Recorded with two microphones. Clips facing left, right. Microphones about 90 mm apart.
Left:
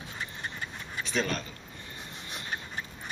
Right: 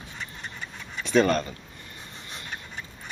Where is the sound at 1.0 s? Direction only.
60° right (ahead or behind).